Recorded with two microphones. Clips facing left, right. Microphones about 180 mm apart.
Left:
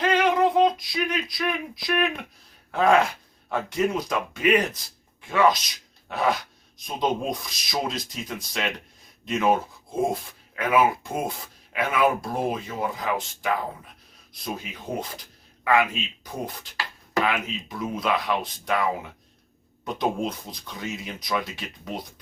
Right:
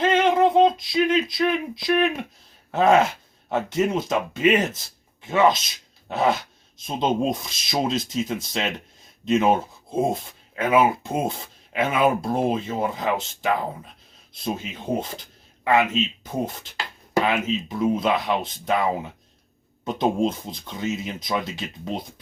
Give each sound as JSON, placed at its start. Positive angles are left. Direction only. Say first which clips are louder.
{"t": 0.0, "sound": "a sound", "louder": "right 2 dB", "side_deg": -25}
{"t": 2.7, "sound": "speech", "louder": "right 2 dB", "side_deg": -25}
{"t": 6.1, "sound": "dog", "louder": "right 3 dB", "side_deg": -25}
{"t": 6.7, "sound": "speech", "louder": "right 3 dB", "side_deg": -25}
{"t": 20.0, "sound": "speech", "louder": "right 5 dB", "side_deg": -25}